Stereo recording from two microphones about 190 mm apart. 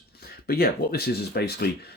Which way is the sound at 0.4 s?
55° left (ahead or behind).